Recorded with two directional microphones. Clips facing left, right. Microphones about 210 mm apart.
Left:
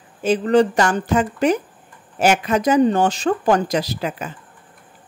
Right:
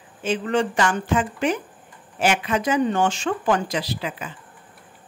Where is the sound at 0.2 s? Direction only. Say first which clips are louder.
Left 7 dB; 40° left (ahead or behind).